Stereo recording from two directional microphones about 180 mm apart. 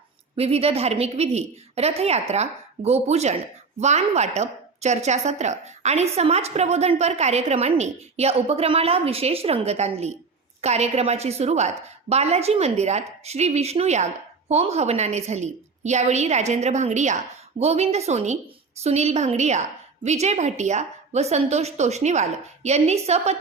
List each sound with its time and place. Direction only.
0.3 s a woman's voice: 35° right (ahead or behind)